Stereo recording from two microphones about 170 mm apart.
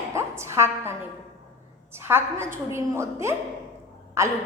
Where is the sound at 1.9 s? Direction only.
15° right (ahead or behind).